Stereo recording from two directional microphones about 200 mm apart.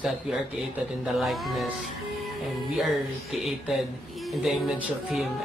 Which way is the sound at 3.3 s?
Centre (ahead or behind).